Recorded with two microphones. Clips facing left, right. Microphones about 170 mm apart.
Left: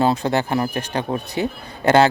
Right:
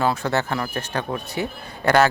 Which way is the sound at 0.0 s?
20° left (ahead or behind).